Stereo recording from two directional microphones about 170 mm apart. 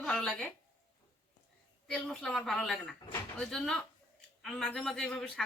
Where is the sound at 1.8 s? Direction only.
5° left (ahead or behind).